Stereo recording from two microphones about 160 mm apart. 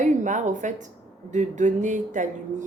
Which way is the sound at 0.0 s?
50° right (ahead or behind).